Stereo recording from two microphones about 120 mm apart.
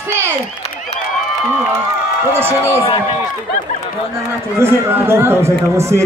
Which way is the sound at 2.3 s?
20° right (ahead or behind).